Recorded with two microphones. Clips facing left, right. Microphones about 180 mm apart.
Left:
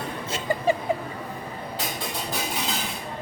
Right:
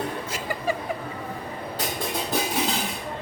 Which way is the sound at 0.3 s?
25° left (ahead or behind).